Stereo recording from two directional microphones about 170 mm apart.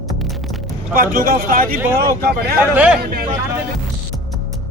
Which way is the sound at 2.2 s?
70° right (ahead or behind).